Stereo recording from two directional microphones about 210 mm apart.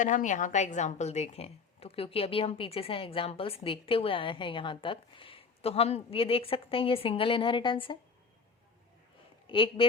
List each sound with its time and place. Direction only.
0.0 s speech: 35° left (ahead or behind)
9.5 s speech: 25° left (ahead or behind)